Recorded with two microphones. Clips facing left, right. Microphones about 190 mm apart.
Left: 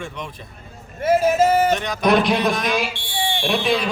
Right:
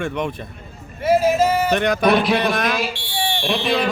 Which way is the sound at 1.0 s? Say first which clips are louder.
Even; 50° left (ahead or behind).